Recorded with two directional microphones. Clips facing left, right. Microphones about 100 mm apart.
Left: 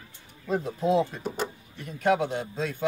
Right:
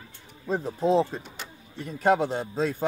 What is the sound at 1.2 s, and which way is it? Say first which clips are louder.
Speech: left 11 dB; 40° left (ahead or behind).